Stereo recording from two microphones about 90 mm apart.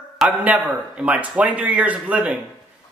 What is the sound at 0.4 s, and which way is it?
Speech, 15° right (ahead or behind).